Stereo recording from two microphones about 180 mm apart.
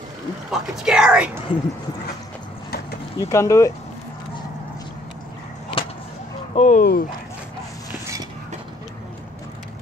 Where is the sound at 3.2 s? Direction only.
15° left (ahead or behind).